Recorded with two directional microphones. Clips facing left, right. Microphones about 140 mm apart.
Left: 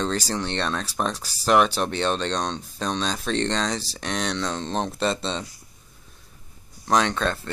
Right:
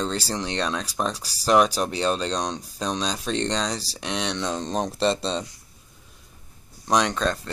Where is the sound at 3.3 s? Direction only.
10° right (ahead or behind).